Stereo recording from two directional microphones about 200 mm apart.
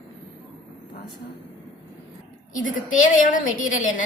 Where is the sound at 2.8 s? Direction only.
40° left (ahead or behind).